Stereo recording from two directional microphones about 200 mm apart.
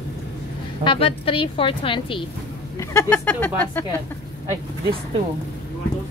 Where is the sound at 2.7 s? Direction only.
10° left (ahead or behind).